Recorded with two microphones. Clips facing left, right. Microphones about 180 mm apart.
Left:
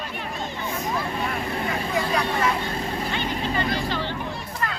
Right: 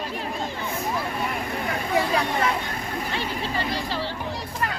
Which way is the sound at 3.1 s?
35° right (ahead or behind).